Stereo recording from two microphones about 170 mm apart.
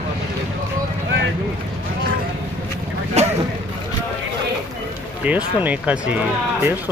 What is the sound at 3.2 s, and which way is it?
Speech, 40° right (ahead or behind).